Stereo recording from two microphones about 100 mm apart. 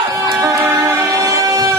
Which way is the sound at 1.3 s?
35° right (ahead or behind).